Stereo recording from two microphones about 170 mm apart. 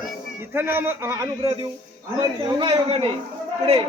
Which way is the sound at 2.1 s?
25° right (ahead or behind).